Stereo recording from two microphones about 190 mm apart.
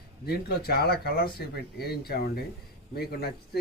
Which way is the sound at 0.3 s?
55° left (ahead or behind).